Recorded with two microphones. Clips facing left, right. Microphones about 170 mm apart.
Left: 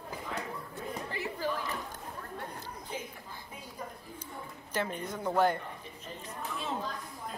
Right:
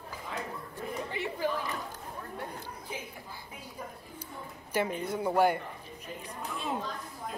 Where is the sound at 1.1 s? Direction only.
20° right (ahead or behind).